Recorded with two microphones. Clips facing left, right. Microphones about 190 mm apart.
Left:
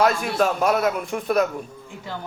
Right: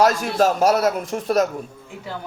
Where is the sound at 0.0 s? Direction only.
35° right (ahead or behind).